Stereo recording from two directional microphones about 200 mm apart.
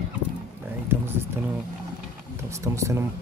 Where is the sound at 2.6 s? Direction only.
15° right (ahead or behind).